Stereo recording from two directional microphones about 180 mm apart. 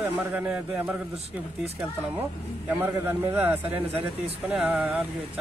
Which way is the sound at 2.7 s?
10° right (ahead or behind).